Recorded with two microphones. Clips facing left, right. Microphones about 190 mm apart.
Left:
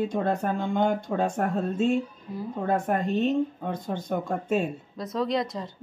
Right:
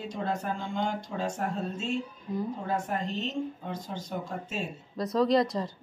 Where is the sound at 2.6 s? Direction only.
55° left (ahead or behind).